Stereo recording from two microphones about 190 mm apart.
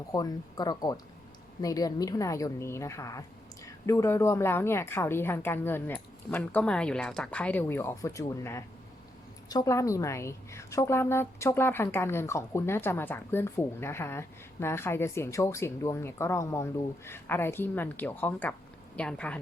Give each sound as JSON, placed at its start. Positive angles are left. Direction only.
{"t": 0.1, "sound": "a woman's voice", "side_deg": 20}